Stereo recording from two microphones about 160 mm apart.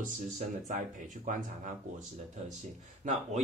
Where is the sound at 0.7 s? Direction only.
50° right (ahead or behind).